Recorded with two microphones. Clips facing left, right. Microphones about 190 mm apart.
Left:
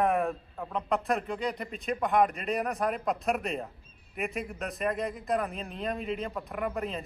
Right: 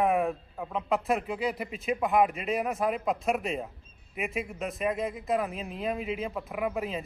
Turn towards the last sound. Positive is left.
turn(degrees=-5)  # may be behind; listen again after turning